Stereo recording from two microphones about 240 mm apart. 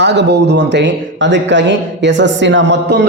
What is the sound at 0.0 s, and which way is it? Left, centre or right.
Speech, right.